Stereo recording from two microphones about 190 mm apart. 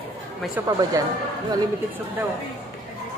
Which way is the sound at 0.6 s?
10° right (ahead or behind).